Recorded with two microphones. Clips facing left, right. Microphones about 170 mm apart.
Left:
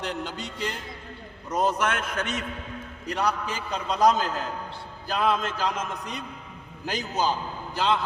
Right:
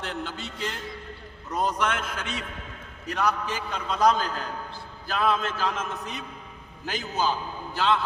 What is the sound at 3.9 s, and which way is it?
Speech, 45° left (ahead or behind).